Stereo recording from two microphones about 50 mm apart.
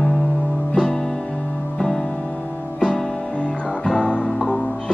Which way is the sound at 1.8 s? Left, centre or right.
Centre.